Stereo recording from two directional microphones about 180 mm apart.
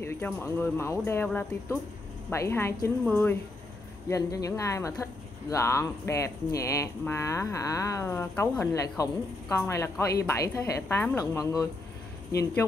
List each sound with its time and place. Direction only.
0.0 s speech: 10° left (ahead or behind)